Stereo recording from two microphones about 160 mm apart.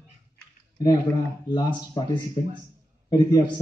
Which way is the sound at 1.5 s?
25° left (ahead or behind).